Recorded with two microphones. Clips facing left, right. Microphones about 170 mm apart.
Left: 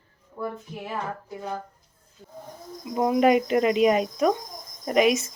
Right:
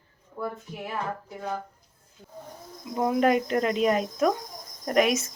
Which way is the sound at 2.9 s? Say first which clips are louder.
Left 3 dB; 15° left (ahead or behind).